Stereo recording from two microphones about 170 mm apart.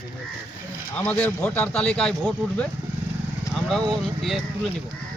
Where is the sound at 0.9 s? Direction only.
10° left (ahead or behind).